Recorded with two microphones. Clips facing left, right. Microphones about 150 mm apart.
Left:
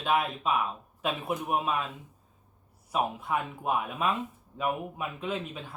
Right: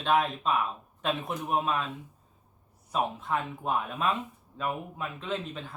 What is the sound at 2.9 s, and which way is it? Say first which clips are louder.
Speech: even; 10° left (ahead or behind).